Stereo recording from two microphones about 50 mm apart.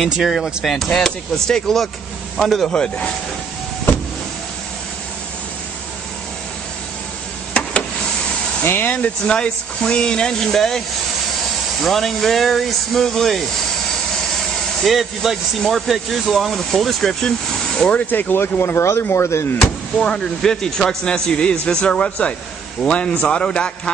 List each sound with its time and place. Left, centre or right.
0.2 s speech: centre
2.7 s a man's voice: left
8.6 s speech: left
9.2 s speech: centre
11.8 s speech: centre
14.8 s speech: centre
18.1 s speech: left
19.6 s a man's voice: centre